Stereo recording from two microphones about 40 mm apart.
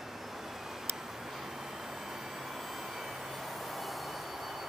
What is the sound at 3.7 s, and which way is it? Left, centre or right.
Vehicle, centre.